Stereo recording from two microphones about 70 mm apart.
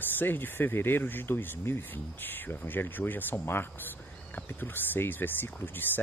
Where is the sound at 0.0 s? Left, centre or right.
Left.